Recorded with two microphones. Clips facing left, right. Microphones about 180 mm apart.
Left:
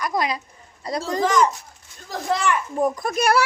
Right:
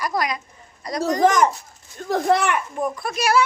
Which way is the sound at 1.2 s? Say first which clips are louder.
Right 2 dB; 50° right (ahead or behind).